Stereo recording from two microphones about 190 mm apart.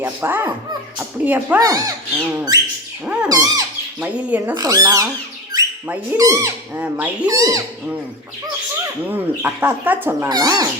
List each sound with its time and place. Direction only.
0.0 s speech: 10° right (ahead or behind)
1.5 s speech: 20° right (ahead or behind)
3.2 s bird: 20° right (ahead or behind)
4.0 s speech: 10° right (ahead or behind)
4.5 s speech: 20° right (ahead or behind)
7.3 s speech: 20° right (ahead or behind)
9.0 s speech: 10° right (ahead or behind)